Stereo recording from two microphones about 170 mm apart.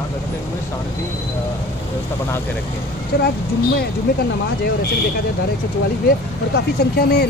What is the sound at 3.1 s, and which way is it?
Speech, 70° left (ahead or behind).